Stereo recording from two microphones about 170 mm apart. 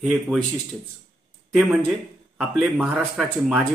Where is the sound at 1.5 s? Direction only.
5° left (ahead or behind).